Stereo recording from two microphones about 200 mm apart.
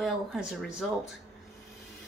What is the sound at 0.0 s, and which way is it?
Speech, centre (ahead or behind).